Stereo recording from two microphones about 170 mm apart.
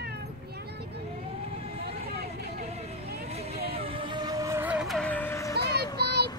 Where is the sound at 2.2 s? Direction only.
65° right (ahead or behind).